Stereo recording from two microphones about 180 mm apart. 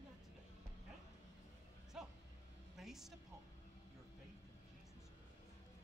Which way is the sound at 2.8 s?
Centre (ahead or behind).